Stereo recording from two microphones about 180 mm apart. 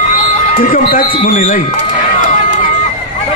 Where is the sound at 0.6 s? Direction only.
50° left (ahead or behind).